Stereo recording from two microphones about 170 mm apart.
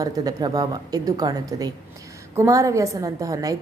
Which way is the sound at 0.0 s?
20° right (ahead or behind).